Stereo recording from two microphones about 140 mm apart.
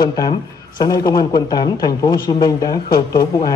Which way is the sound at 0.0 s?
30° left (ahead or behind).